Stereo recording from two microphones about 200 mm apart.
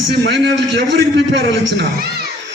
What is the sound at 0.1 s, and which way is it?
Speech, 60° right (ahead or behind).